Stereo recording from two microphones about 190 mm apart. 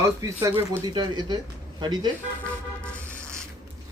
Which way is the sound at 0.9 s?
20° right (ahead or behind).